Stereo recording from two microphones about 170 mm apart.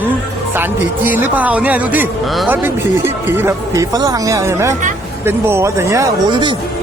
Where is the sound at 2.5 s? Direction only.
15° right (ahead or behind).